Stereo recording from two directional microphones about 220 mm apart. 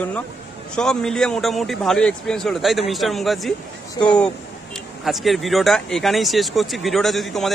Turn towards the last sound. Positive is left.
turn(degrees=0)  # may be behind; listen again after turning